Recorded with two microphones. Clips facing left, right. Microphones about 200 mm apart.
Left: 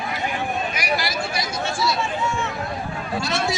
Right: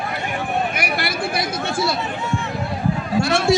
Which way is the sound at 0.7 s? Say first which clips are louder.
Right 1 dB; 55° right (ahead or behind).